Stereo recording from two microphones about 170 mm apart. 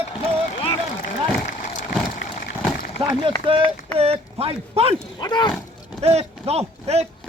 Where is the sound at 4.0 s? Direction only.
35° right (ahead or behind).